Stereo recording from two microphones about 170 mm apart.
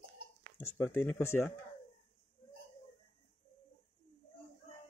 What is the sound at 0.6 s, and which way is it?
Speech, 10° left (ahead or behind).